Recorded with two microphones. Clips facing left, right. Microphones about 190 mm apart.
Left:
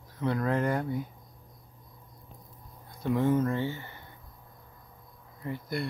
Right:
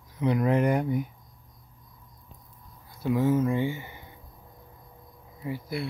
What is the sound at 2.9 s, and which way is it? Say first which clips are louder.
Speech: right 2 dB; 5° right (ahead or behind).